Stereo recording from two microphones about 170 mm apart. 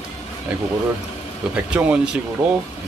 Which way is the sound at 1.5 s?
5° right (ahead or behind).